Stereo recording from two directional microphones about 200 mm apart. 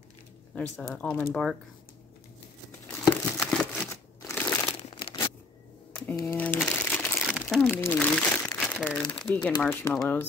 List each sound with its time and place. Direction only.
0.6 s speech: 5° left (ahead or behind)
2.9 s a sound: 5° left (ahead or behind)
4.3 s crumpling: 10° left (ahead or behind)
4.7 s crushing: 25° left (ahead or behind)
6.1 s crumpling: 10° left (ahead or behind)
9.2 s speech: 5° left (ahead or behind)